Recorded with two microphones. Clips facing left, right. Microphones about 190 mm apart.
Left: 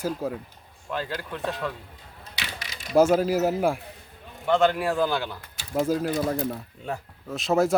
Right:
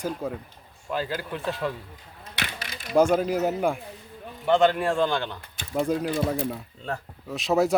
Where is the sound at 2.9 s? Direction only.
5° left (ahead or behind).